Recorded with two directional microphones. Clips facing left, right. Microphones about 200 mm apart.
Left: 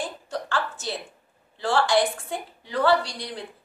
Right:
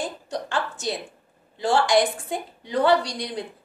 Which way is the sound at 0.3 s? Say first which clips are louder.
Even; 15° right (ahead or behind).